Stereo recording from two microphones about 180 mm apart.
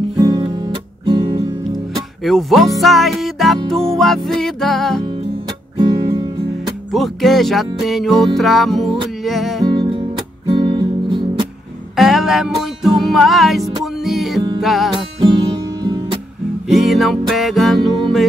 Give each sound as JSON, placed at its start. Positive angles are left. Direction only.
{"t": 0.2, "sound": "guitar", "side_deg": -20}
{"t": 1.0, "sound": "music", "side_deg": -25}
{"t": 2.2, "sound": "music", "side_deg": 0}
{"t": 5.8, "sound": "music", "side_deg": -20}
{"t": 6.9, "sound": "music", "side_deg": 0}
{"t": 9.7, "sound": "music", "side_deg": -30}
{"t": 12.0, "sound": "music", "side_deg": 0}
{"t": 15.1, "sound": "music", "side_deg": -25}
{"t": 16.6, "sound": "music", "side_deg": 0}